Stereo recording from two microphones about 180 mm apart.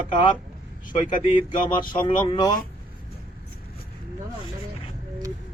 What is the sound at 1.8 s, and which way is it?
Speech, 25° left (ahead or behind).